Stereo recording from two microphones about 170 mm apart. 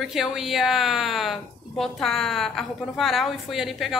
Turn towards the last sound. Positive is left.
turn(degrees=0)  # may be behind; listen again after turning